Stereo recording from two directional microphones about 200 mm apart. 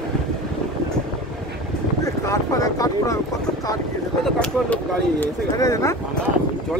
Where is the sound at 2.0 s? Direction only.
15° left (ahead or behind).